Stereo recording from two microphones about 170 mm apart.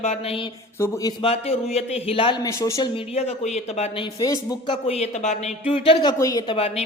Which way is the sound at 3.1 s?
40° left (ahead or behind).